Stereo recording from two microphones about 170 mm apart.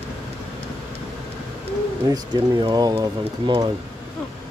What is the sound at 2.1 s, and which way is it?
Speech, 25° right (ahead or behind).